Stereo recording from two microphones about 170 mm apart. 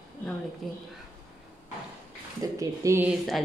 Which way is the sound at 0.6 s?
Centre (ahead or behind).